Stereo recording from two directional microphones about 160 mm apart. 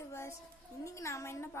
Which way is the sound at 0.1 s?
15° left (ahead or behind).